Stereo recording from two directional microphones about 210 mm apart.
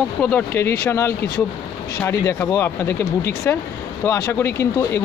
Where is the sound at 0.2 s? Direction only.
10° left (ahead or behind).